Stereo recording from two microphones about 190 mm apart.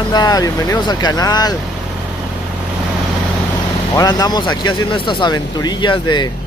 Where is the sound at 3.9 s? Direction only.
20° left (ahead or behind).